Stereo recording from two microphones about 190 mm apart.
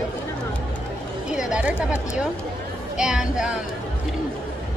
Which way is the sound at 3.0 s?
5° right (ahead or behind).